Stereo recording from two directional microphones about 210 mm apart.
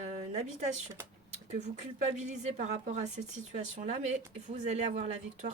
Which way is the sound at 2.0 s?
35° right (ahead or behind).